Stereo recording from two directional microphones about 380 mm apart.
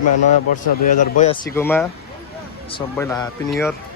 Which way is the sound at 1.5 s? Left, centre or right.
Centre.